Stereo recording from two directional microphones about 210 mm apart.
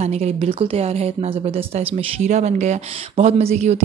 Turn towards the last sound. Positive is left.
turn(degrees=-30)  # may be behind; listen again after turning